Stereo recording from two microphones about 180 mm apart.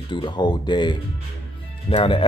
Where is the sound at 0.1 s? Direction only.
25° left (ahead or behind).